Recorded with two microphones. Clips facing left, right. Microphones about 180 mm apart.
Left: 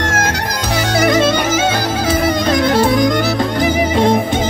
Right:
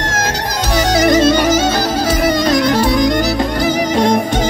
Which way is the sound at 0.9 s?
55° left (ahead or behind).